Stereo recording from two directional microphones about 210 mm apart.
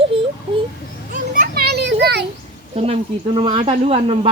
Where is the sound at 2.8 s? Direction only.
25° right (ahead or behind).